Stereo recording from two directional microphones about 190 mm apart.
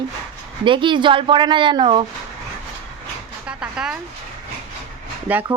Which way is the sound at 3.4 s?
5° right (ahead or behind).